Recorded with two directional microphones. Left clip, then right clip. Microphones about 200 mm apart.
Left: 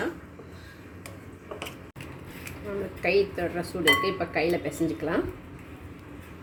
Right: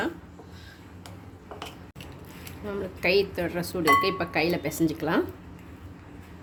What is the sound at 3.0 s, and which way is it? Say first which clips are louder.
Speech: right 1 dB; 60° right (ahead or behind).